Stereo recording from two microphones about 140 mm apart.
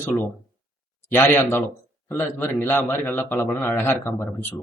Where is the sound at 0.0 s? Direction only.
15° left (ahead or behind).